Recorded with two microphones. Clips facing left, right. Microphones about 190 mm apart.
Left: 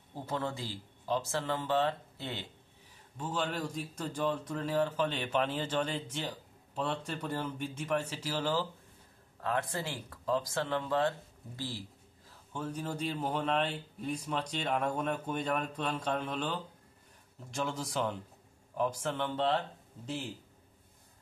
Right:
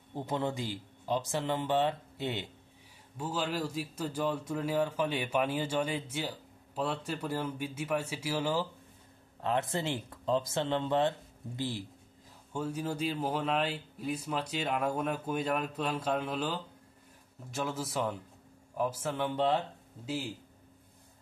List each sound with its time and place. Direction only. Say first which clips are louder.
0.1 s a man's voice: right 3 dB; 20° right (ahead or behind)
9.4 s a man's voice: right 3 dB; 20° right (ahead or behind)